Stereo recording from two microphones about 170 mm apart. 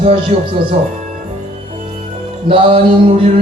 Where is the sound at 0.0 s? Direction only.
35° right (ahead or behind).